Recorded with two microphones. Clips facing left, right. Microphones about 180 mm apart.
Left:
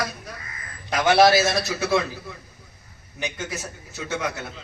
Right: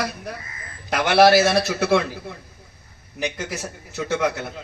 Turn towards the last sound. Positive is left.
turn(degrees=-60)  # may be behind; listen again after turning